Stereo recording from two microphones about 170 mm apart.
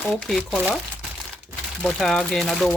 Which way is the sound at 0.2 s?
Centre (ahead or behind).